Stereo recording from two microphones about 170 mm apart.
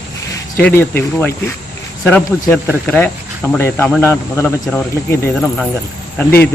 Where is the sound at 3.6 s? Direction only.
15° left (ahead or behind).